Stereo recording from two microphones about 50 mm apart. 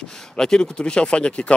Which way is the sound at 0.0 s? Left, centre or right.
Centre.